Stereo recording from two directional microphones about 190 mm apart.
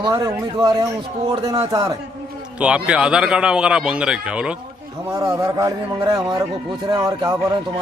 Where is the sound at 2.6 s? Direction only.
5° right (ahead or behind).